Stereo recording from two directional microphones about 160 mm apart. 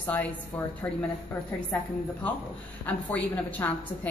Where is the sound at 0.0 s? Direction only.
10° left (ahead or behind).